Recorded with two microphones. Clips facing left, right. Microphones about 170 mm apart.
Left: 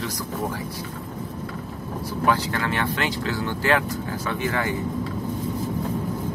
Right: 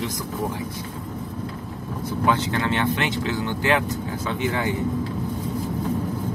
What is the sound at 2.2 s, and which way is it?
Speech, 20° right (ahead or behind).